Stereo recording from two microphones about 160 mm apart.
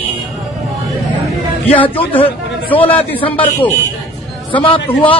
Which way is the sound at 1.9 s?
10° left (ahead or behind).